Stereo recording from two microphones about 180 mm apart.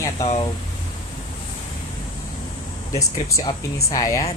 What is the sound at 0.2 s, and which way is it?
Speech, 35° left (ahead or behind).